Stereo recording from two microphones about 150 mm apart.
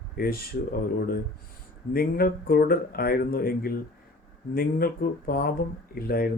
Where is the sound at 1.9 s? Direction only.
85° left.